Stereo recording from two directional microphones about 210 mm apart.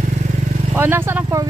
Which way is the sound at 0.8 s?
10° right (ahead or behind).